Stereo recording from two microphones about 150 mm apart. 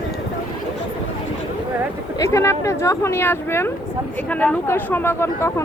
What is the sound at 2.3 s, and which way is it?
Speech, 20° left (ahead or behind).